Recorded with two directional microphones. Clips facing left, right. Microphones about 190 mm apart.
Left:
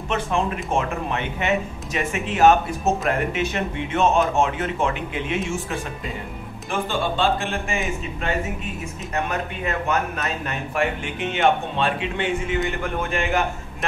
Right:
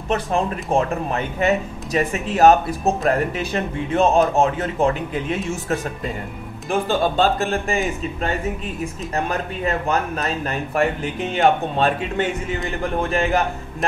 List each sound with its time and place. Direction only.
0.1 s speech: 35° right (ahead or behind)
6.7 s speech: 40° right (ahead or behind)